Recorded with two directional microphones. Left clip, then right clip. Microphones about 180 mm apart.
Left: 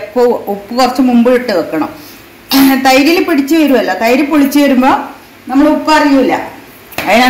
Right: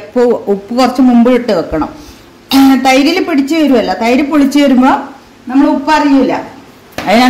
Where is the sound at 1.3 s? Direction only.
60° right (ahead or behind).